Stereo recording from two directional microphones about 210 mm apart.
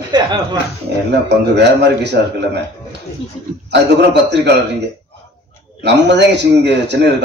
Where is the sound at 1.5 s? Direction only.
55° right (ahead or behind).